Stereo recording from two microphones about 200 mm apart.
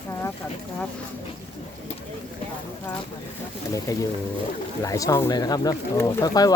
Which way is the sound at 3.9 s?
15° left (ahead or behind).